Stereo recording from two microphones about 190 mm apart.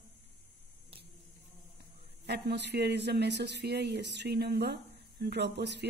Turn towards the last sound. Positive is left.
turn(degrees=-65)  # may be behind; listen again after turning